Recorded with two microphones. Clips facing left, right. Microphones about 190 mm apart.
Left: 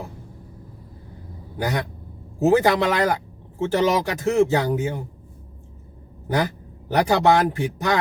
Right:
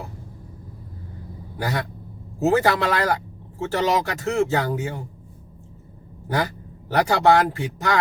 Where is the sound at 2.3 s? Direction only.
20° left (ahead or behind).